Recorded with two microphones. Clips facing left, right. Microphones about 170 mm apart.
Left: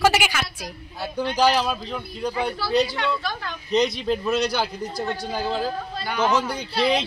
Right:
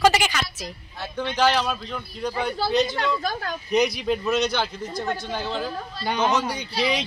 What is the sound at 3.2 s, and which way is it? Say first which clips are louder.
Speech: right 3 dB; 45° right (ahead or behind).